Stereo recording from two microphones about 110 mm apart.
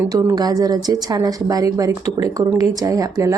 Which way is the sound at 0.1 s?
30° right (ahead or behind).